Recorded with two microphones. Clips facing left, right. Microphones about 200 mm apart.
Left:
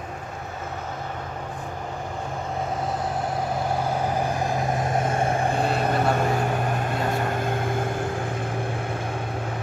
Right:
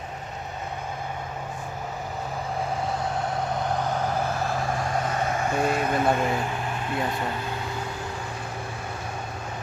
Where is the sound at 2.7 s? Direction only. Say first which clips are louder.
Left 1 dB; centre (ahead or behind); by 9.4 s 55° left (ahead or behind).